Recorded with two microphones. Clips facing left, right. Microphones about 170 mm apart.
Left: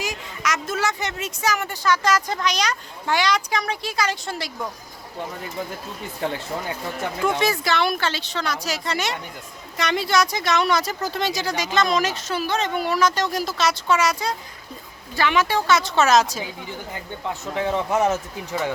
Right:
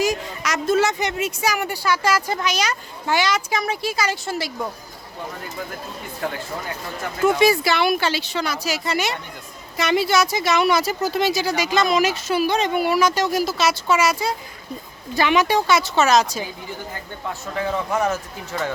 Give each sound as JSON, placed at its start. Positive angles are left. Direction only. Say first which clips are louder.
{"t": 0.0, "sound": "a woman's voice", "louder": "right 6 dB", "side_deg": -40}
{"t": 6.2, "sound": "a man's voice", "louder": "left 1 dB", "side_deg": 25}
{"t": 7.2, "sound": "a woman's voice", "louder": "right 6 dB", "side_deg": -10}
{"t": 17.4, "sound": "a man's voice", "louder": "left 1 dB", "side_deg": 20}